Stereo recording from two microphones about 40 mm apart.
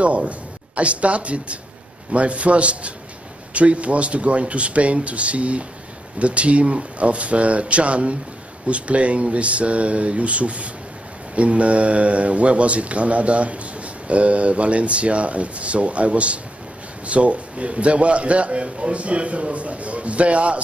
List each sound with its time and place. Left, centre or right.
0.0 s speech: right